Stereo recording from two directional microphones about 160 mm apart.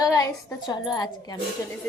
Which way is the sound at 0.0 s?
20° left (ahead or behind).